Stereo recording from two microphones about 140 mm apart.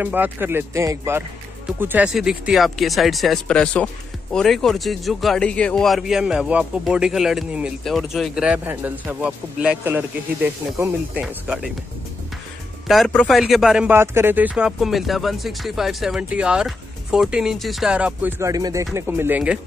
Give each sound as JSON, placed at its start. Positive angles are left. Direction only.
{"t": 0.0, "sound": "speech", "side_deg": -15}
{"t": 2.1, "sound": "speech", "side_deg": 0}
{"t": 12.8, "sound": "speech", "side_deg": 0}
{"t": 13.9, "sound": "speech", "side_deg": -15}
{"t": 18.4, "sound": "speech", "side_deg": -25}